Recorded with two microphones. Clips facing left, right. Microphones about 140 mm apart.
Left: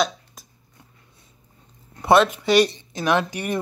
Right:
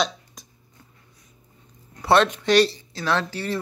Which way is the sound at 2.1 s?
10° left (ahead or behind).